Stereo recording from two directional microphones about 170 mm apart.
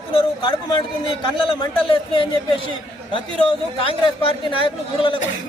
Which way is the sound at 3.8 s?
30° left (ahead or behind).